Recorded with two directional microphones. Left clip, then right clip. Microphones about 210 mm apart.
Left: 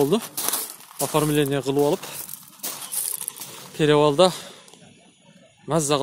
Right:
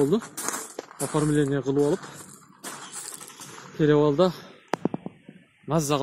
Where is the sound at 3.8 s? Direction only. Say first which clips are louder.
Left 4 dB; 30° left (ahead or behind).